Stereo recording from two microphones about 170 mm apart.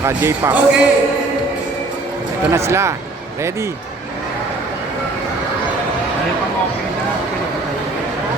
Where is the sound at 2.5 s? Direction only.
15° right (ahead or behind).